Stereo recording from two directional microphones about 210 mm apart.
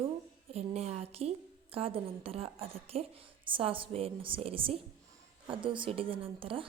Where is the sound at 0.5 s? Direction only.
30° right (ahead or behind).